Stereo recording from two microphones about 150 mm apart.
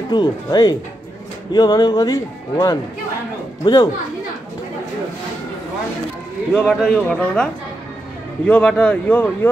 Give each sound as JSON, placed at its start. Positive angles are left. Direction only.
{"t": 0.1, "sound": "speech", "side_deg": 25}
{"t": 6.5, "sound": "speech", "side_deg": 5}
{"t": 8.5, "sound": "speech", "side_deg": 10}